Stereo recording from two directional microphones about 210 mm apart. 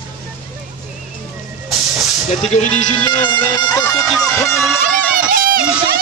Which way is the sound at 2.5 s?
30° left (ahead or behind).